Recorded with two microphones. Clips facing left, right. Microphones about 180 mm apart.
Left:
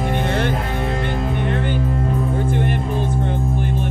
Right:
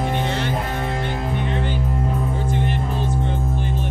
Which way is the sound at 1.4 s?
55° left (ahead or behind).